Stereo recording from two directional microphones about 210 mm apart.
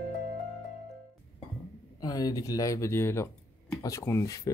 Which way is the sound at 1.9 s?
20° left (ahead or behind).